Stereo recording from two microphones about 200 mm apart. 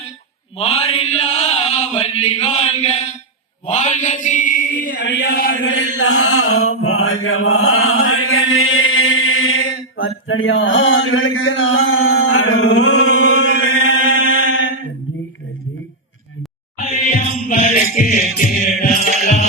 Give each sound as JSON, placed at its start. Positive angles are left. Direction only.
{"t": 0.6, "sound": "mantra", "side_deg": 30}
{"t": 4.9, "sound": "chant", "side_deg": 60}
{"t": 5.6, "sound": "mantra", "side_deg": 70}
{"t": 14.5, "sound": "a sound", "side_deg": 70}
{"t": 16.8, "sound": "music", "side_deg": 40}